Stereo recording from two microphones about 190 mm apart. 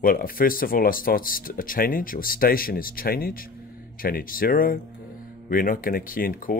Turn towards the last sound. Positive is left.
turn(degrees=50)  # may be behind; listen again after turning